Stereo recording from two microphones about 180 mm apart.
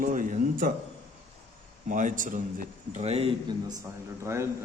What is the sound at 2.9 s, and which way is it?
Speech, 35° right (ahead or behind).